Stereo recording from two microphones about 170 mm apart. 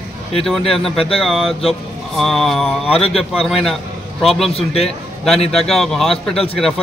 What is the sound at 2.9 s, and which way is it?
Speech, 35° left (ahead or behind).